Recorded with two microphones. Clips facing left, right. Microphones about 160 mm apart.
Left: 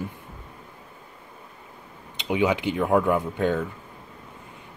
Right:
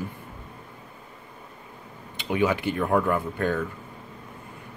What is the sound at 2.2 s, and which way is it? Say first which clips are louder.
Speech: left 1 dB; 15° left (ahead or behind).